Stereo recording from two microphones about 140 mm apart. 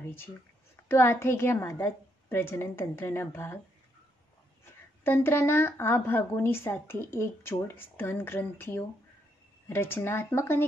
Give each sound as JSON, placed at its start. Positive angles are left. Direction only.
{"t": 0.8, "sound": "a woman's voice", "side_deg": 15}
{"t": 5.0, "sound": "a woman's voice", "side_deg": 15}